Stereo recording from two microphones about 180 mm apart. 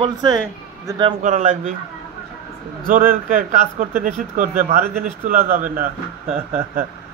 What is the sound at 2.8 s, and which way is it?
Speech, 45° right (ahead or behind).